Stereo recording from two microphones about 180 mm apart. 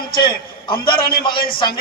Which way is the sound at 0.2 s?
30° left (ahead or behind).